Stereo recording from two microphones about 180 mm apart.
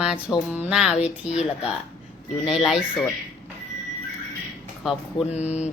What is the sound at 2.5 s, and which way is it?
Speech, centre (ahead or behind).